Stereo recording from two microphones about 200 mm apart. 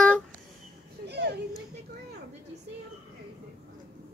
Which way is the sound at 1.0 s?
55° right (ahead or behind).